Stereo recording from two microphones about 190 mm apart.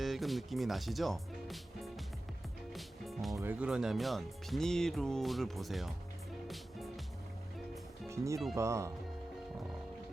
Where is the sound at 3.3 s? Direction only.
10° right (ahead or behind).